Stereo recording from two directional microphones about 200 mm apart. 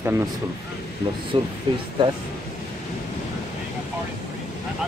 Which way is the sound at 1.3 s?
25° right (ahead or behind).